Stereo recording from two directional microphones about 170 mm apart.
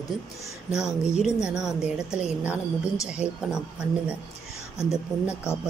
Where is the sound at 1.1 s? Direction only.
5° right (ahead or behind).